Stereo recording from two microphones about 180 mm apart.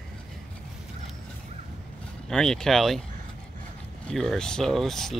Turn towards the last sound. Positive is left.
turn(degrees=0)  # may be behind; listen again after turning